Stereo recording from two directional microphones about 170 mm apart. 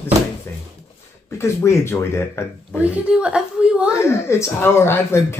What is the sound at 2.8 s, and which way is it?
A woman's voice, 5° right (ahead or behind).